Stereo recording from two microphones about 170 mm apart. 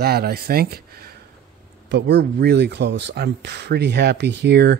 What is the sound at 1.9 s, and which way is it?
Speech, 90° right.